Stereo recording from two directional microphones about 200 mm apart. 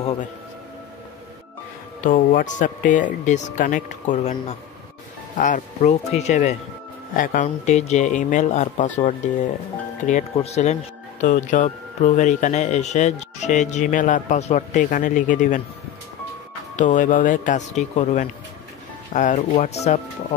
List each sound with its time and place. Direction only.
2.0 s speech: 40° left (ahead or behind)
16.7 s speech: 40° left (ahead or behind)